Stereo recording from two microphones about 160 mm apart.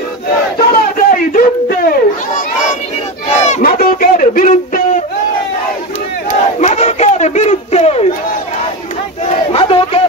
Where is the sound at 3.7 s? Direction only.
60° left (ahead or behind).